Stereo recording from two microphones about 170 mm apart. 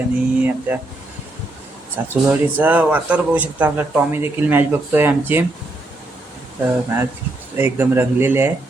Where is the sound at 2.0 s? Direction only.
10° right (ahead or behind).